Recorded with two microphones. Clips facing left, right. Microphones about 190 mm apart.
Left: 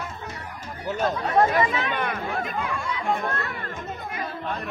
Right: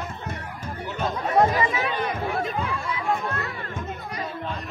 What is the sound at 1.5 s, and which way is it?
Chatter, 60° left (ahead or behind).